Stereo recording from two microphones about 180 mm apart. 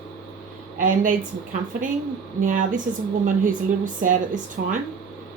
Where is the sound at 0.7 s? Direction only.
45° right (ahead or behind).